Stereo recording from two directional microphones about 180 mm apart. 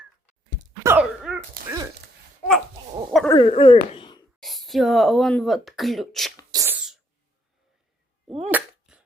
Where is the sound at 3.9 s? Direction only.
25° left (ahead or behind).